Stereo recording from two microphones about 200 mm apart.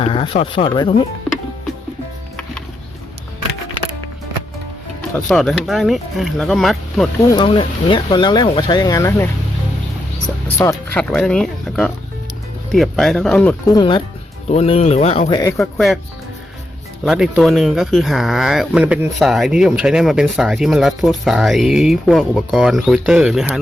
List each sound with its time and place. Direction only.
0.0 s speech: 25° left (ahead or behind)
5.1 s speech: 5° left (ahead or behind)
7.3 s speech: 25° left (ahead or behind)
10.6 s speech: 15° left (ahead or behind)
11.1 s speech: 5° left (ahead or behind)
13.7 s speech: 25° left (ahead or behind)
15.6 s speech: centre (ahead or behind)
17.1 s speech: centre (ahead or behind)